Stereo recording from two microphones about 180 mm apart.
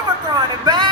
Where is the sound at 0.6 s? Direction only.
25° right (ahead or behind).